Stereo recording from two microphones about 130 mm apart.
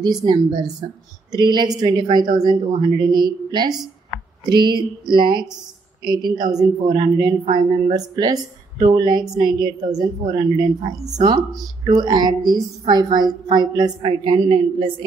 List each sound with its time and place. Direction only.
0.0 s a woman's voice: 35° right (ahead or behind)